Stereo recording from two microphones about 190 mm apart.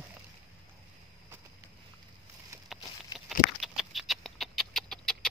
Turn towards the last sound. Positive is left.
turn(degrees=5)  # may be behind; listen again after turning